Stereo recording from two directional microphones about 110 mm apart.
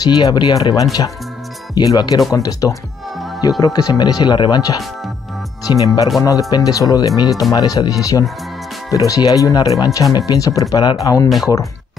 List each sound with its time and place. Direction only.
0.0 s speech: 40° left (ahead or behind)